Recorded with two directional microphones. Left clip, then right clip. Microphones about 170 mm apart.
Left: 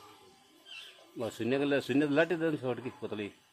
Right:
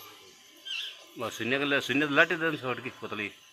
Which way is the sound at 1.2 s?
30° left (ahead or behind).